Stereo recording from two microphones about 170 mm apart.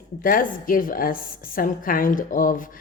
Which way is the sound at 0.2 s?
55° left (ahead or behind).